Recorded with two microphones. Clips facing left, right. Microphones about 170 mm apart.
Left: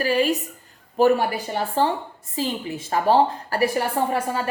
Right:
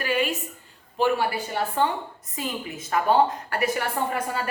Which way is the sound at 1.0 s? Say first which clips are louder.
Left 6 dB; 45° left (ahead or behind).